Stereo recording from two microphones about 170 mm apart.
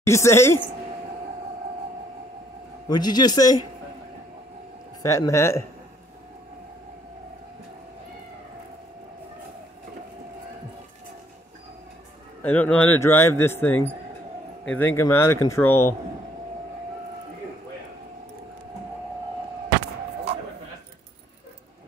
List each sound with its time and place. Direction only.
0.0 s speech: 15° left (ahead or behind)
2.9 s a man's voice: 25° left (ahead or behind)
5.0 s speech: 20° left (ahead or behind)
12.4 s speech: 10° left (ahead or behind)